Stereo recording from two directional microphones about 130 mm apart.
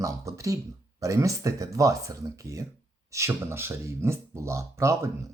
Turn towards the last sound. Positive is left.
turn(degrees=-20)  # may be behind; listen again after turning